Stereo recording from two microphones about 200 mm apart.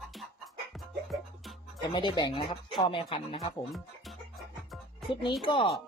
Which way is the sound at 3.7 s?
Centre (ahead or behind).